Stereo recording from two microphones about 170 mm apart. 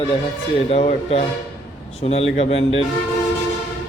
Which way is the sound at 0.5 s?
35° left (ahead or behind).